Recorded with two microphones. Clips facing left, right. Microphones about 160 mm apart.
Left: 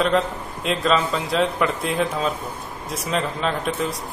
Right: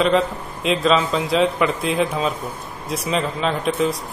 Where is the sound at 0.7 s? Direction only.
Centre (ahead or behind).